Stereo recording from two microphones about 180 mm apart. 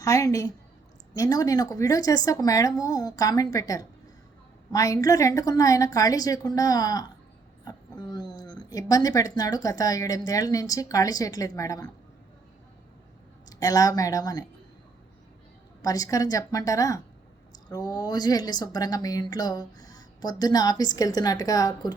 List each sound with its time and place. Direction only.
0.0 s a woman's voice: 20° left (ahead or behind)
13.5 s speech: 20° left (ahead or behind)
15.8 s speech: 20° left (ahead or behind)